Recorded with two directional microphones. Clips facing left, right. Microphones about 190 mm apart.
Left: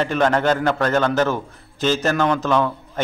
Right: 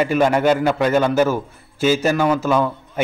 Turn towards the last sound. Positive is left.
turn(degrees=-10)  # may be behind; listen again after turning